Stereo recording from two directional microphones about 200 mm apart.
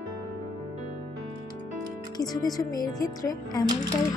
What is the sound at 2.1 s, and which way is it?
Speech, 20° left (ahead or behind).